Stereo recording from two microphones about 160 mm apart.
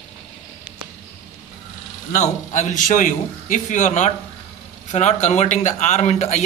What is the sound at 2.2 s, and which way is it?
A man's voice, 45° left (ahead or behind).